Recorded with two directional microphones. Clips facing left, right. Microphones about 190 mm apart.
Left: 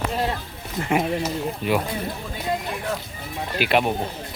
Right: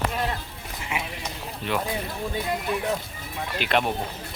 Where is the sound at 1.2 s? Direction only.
10° left (ahead or behind).